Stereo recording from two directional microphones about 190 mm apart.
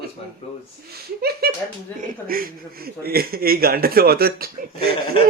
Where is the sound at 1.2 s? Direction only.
55° right (ahead or behind).